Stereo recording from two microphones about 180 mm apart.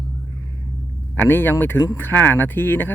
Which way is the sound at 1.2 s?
10° left (ahead or behind).